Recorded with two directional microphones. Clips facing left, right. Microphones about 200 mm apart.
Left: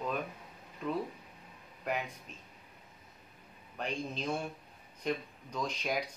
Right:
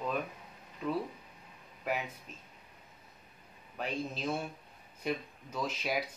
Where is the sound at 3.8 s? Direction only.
5° right (ahead or behind).